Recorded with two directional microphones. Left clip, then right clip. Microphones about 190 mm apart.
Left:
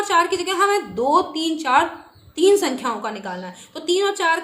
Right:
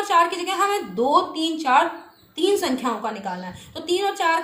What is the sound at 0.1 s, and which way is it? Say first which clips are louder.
Speech: even; 50° left (ahead or behind).